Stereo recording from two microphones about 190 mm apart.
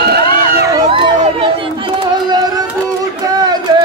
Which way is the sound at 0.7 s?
30° right (ahead or behind).